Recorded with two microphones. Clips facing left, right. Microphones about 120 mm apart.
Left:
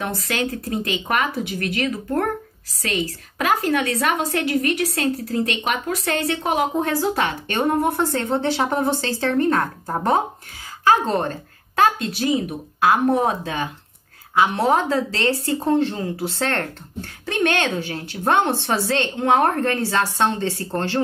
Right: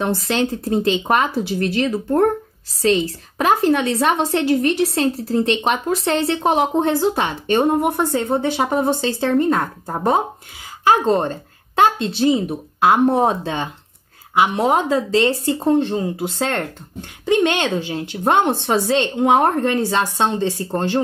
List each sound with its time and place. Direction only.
0.0 s a woman's voice: 30° right (ahead or behind)
14.4 s a woman's voice: 15° right (ahead or behind)